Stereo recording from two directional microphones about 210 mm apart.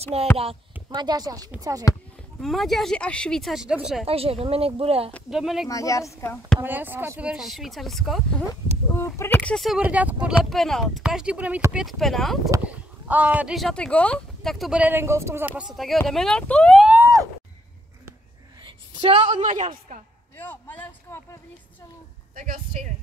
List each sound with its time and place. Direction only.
0.0 s speech: 30° right (ahead or behind)
2.4 s speech: centre (ahead or behind)
4.0 s speech: 30° right (ahead or behind)
5.1 s speech: centre (ahead or behind)
5.7 s speech: 15° left (ahead or behind)
6.6 s speech: 10° right (ahead or behind)
8.9 s speech: 10° left (ahead or behind)
12.4 s speech: 10° right (ahead or behind)
18.6 s a woman's voice: 20° right (ahead or behind)
20.3 s a sound: 10° left (ahead or behind)
22.3 s a woman's voice: 40° right (ahead or behind)